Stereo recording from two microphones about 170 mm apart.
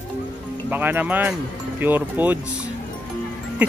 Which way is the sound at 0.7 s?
10° right (ahead or behind).